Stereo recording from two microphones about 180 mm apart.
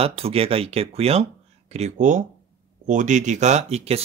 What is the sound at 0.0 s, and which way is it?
Speech, 35° right (ahead or behind).